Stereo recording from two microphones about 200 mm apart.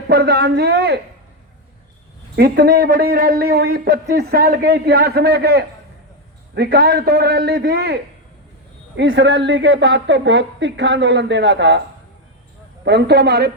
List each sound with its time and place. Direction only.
0.1 s a man's voice: 55° right (ahead or behind)
2.3 s a man's voice: 50° right (ahead or behind)
12.8 s a woman's voice: 60° right (ahead or behind)